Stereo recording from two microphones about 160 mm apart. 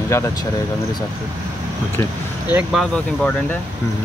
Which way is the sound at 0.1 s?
15° left (ahead or behind).